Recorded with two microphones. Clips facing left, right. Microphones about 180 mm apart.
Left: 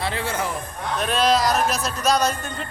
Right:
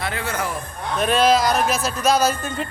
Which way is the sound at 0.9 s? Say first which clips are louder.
Right 3 dB; centre (ahead or behind).